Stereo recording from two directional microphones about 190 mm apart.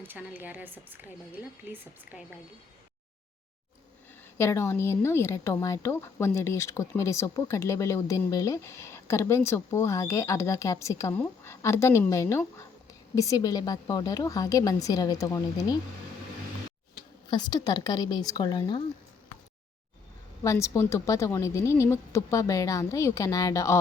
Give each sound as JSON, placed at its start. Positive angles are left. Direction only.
{"t": 0.0, "sound": "a woman's voice", "side_deg": -10}
{"t": 4.4, "sound": "a woman's voice", "side_deg": 15}
{"t": 17.3, "sound": "a woman's voice", "side_deg": 20}
{"t": 20.4, "sound": "a woman's voice", "side_deg": 15}